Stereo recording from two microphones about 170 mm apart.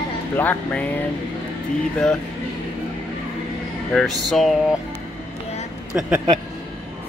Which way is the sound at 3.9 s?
Centre (ahead or behind).